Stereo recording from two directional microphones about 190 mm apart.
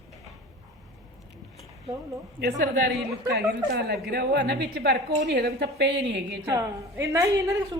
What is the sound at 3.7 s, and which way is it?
A woman's voice, 55° right (ahead or behind).